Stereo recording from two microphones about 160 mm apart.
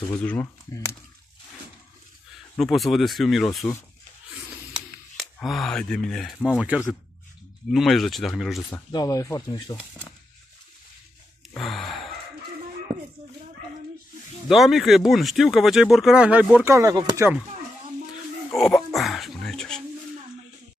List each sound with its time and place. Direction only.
0.2 s speech: 10° left (ahead or behind)
2.5 s speech: centre (ahead or behind)
4.7 s speech: centre (ahead or behind)
8.6 s speech: 20° left (ahead or behind)
11.5 s gasp: centre (ahead or behind)
14.5 s speech: centre (ahead or behind)
16.7 s speech: 20° right (ahead or behind)
18.6 s a sound: 5° left (ahead or behind)